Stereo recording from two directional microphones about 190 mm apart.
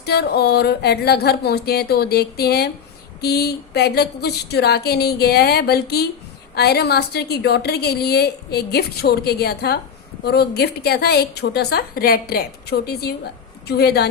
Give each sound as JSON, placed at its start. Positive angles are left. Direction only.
{"t": 0.0, "sound": "a woman's voice", "side_deg": 55}